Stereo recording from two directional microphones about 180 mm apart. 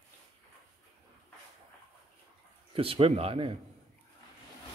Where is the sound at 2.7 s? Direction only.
30° right (ahead or behind).